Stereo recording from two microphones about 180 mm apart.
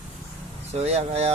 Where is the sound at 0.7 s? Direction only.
35° right (ahead or behind).